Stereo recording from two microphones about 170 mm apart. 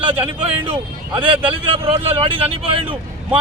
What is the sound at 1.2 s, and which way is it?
Speech, 30° right (ahead or behind).